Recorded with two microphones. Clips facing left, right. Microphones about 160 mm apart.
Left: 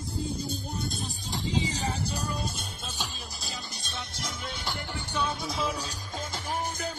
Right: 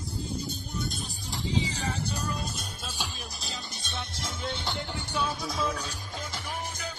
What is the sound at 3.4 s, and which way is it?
Music, 25° right (ahead or behind).